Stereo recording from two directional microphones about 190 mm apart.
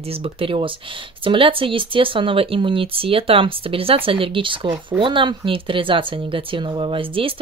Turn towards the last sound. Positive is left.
turn(degrees=-25)  # may be behind; listen again after turning